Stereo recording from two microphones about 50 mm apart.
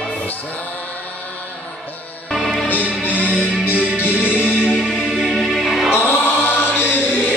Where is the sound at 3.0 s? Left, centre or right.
Left.